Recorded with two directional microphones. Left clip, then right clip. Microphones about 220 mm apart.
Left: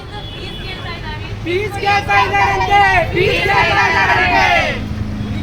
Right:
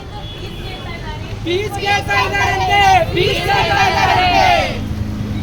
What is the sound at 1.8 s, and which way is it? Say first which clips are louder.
Vehicle: left 3 dB; 50° right (ahead or behind).